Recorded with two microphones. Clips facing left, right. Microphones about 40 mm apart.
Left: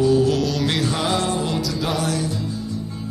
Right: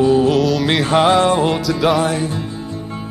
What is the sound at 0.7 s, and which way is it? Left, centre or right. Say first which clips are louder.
Music: right 8 dB; right.